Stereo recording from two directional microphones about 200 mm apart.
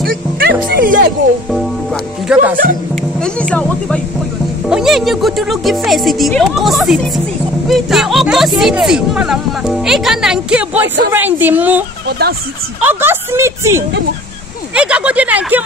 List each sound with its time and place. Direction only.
0.4 s music: 45° right (ahead or behind)
2.3 s speech: 5° right (ahead or behind)
3.0 s music: 5° left (ahead or behind)
4.6 s a woman's voice: centre (ahead or behind)
12.1 s speech: 55° right (ahead or behind)
12.8 s a woman's voice: 10° right (ahead or behind)